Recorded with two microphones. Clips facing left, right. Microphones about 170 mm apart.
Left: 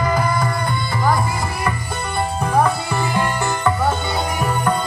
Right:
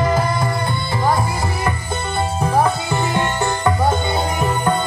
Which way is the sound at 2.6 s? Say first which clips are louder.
Right 1 dB; 25° right (ahead or behind).